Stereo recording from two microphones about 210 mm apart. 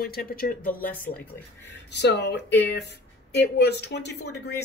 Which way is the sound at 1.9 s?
55° left (ahead or behind).